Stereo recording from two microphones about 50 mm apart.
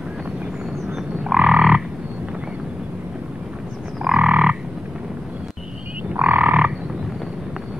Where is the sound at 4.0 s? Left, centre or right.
Centre.